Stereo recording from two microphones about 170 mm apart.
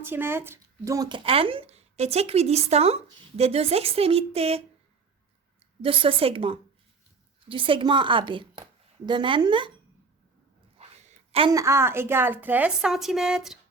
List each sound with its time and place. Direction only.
0.0 s speech: 15° right (ahead or behind); by 4.6 s 35° right (ahead or behind)
5.8 s a woman's voice: 30° right (ahead or behind)
11.3 s a woman's voice: 35° right (ahead or behind)
11.5 s a woman's voice: 15° right (ahead or behind)